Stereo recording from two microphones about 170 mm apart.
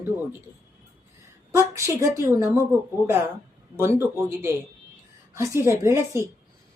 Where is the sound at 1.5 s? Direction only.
15° right (ahead or behind).